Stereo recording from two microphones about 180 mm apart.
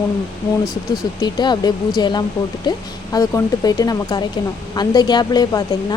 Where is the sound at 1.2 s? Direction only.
25° left (ahead or behind).